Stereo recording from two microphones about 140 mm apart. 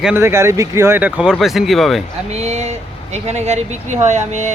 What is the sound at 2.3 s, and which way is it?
Speech, 50° right (ahead or behind).